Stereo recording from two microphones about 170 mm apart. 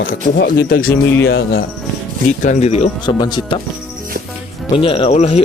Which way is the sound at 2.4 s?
45° left (ahead or behind).